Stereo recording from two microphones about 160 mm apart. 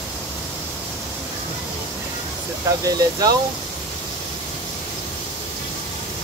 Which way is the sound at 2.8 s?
25° right (ahead or behind).